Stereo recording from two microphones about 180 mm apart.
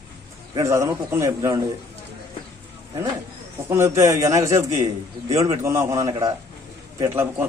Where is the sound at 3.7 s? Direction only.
15° right (ahead or behind).